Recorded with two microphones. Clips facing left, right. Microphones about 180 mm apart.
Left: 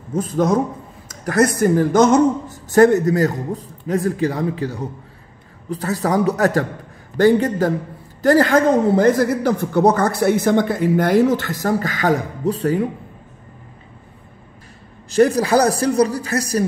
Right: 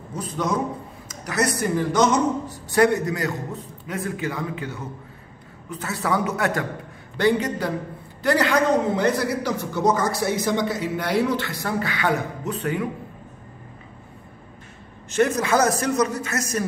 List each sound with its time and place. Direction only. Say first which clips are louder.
0.1 s a man's voice: left 8 dB; 50° left (ahead or behind); by 12.8 s 35° left (ahead or behind)
15.0 s a man's voice: left 6 dB; 35° left (ahead or behind)